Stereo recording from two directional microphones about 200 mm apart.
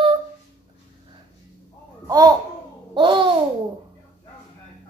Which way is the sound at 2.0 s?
20° right (ahead or behind).